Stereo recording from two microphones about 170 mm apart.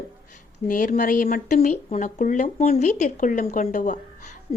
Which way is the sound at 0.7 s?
50° left (ahead or behind).